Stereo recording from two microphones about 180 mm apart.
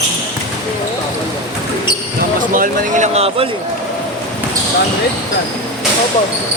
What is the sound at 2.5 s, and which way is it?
Speech, 45° right (ahead or behind).